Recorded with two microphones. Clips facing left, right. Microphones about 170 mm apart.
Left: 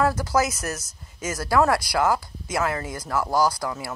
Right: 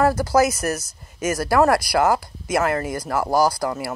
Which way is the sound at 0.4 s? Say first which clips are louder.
Right 6 dB; 65° right (ahead or behind).